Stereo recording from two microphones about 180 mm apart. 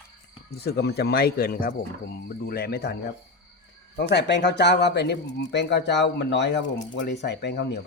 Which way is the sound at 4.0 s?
65° left (ahead or behind).